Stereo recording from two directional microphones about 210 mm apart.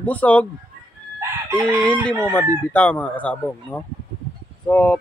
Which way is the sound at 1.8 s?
5° left (ahead or behind).